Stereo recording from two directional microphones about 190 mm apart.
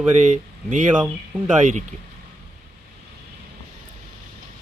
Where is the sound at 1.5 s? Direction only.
40° right (ahead or behind).